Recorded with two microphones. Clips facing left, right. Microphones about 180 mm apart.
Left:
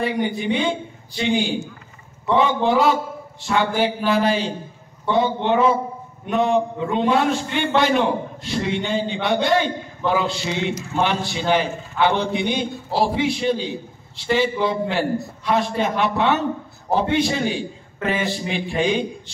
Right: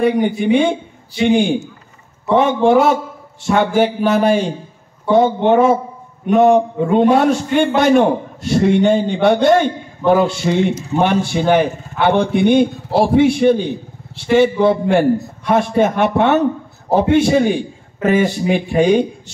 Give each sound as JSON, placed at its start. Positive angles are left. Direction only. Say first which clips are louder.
{"t": 0.0, "sound": "a man's voice", "louder": "right 7 dB", "side_deg": -50}
{"t": 2.3, "sound": "a man's voice", "louder": "right 6 dB", "side_deg": -50}